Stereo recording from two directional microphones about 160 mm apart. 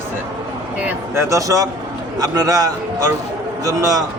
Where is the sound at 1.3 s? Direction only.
20° right (ahead or behind).